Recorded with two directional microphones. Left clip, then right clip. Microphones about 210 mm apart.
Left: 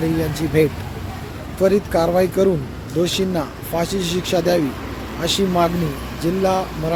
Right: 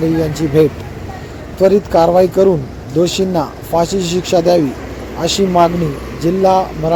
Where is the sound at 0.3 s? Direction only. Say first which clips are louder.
Right 5 dB; 15° right (ahead or behind).